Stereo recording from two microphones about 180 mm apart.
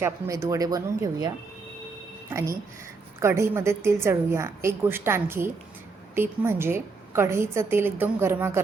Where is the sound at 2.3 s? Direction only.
15° right (ahead or behind).